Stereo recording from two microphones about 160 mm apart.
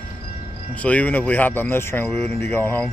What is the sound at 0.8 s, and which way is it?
Speech, 10° left (ahead or behind).